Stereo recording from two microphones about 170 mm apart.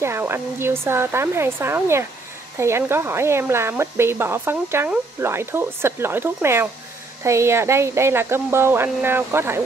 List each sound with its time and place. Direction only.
0.0 s speech: 15° right (ahead or behind)